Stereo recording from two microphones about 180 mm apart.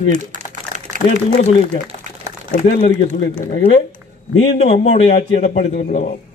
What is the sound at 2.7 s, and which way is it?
Speech, 40° left (ahead or behind).